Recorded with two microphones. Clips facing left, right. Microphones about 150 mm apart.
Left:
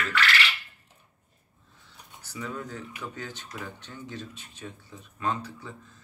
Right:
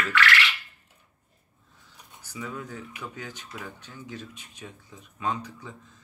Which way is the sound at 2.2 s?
10° right (ahead or behind).